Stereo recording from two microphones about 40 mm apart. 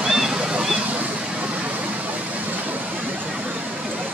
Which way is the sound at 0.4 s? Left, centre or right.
Right.